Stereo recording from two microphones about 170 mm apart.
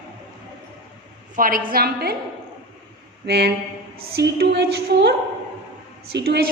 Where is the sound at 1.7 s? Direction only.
65° right (ahead or behind).